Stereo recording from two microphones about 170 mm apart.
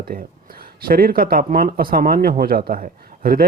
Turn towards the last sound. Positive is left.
turn(degrees=-60)  # may be behind; listen again after turning